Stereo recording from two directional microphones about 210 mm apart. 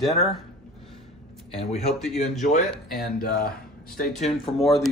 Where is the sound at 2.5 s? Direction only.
40° left (ahead or behind).